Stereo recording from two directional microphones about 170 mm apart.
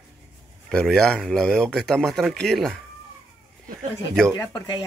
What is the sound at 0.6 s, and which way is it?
Speech, 5° left (ahead or behind).